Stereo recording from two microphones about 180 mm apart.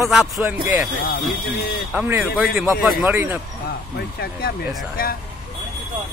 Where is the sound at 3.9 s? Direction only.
60° left (ahead or behind).